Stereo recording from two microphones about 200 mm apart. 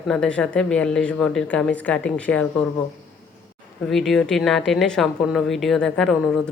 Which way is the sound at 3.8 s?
Centre (ahead or behind).